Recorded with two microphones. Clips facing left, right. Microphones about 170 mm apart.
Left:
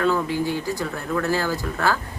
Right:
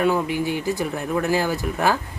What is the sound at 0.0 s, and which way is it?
Speech, 15° right (ahead or behind).